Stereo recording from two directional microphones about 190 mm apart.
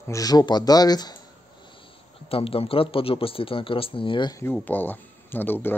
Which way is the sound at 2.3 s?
30° left (ahead or behind).